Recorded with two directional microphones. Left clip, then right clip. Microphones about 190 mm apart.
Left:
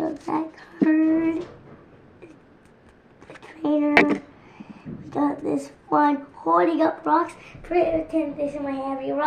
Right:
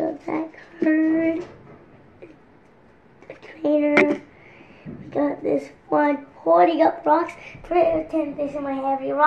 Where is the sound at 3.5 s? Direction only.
20° left (ahead or behind).